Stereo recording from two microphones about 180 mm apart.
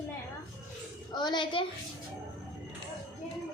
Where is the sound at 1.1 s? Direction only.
25° left (ahead or behind).